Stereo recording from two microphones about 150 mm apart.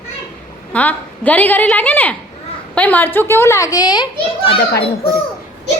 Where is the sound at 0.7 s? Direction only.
10° left (ahead or behind); by 4.6 s 35° left (ahead or behind).